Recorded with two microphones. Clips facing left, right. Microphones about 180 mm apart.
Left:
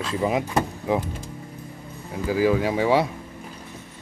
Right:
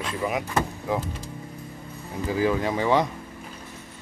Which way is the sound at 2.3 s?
5° left (ahead or behind).